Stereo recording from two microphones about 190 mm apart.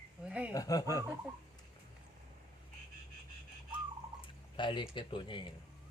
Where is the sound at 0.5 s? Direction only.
20° left (ahead or behind).